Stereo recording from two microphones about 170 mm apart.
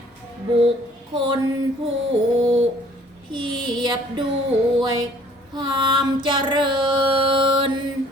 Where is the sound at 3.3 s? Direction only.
25° right (ahead or behind).